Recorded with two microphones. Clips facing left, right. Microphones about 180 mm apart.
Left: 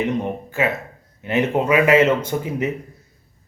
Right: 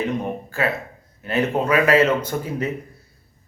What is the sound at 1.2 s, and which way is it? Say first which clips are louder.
A man's voice: left 2 dB; 20° left (ahead or behind).